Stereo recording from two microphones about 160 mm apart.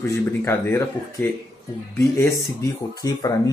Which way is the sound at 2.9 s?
20° left (ahead or behind).